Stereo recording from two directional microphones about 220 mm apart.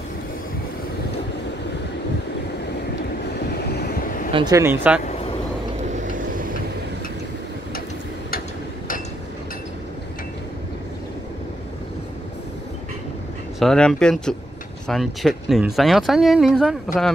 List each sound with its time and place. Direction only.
3.6 s vehicle: 45° left (ahead or behind)
4.3 s speech: 20° right (ahead or behind)
5.9 s vehicle: 35° right (ahead or behind)
13.6 s speech: 5° left (ahead or behind)